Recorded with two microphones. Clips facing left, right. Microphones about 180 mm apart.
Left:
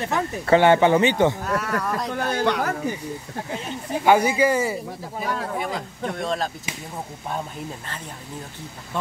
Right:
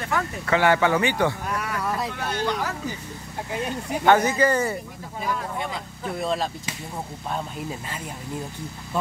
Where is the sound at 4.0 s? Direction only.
10° left (ahead or behind).